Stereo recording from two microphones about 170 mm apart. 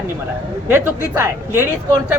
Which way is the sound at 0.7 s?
15° right (ahead or behind).